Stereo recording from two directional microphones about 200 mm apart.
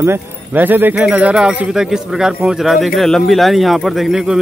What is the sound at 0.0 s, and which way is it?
Speech, 10° right (ahead or behind).